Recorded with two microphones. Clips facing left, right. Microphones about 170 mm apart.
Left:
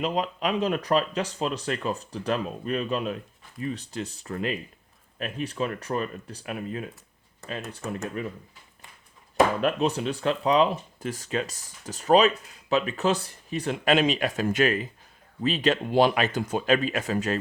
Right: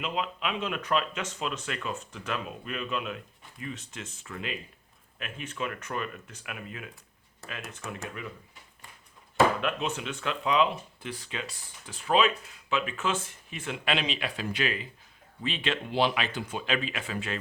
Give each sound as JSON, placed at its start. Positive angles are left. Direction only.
{"t": 0.0, "sound": "speech", "side_deg": 40}
{"t": 8.0, "sound": "speech", "side_deg": 40}
{"t": 9.6, "sound": "speech", "side_deg": 35}